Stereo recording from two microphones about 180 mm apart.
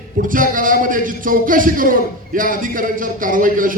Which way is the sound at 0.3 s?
50° right (ahead or behind).